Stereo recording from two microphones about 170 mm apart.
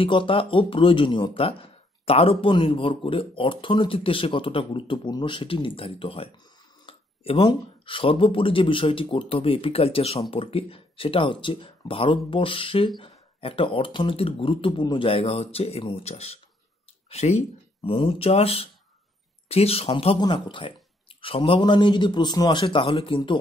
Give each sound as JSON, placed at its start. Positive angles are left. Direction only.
{"t": 0.0, "sound": "a man's voice", "side_deg": 30}